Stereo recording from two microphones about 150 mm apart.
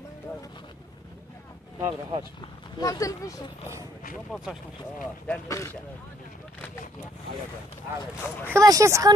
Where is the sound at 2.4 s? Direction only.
25° left (ahead or behind).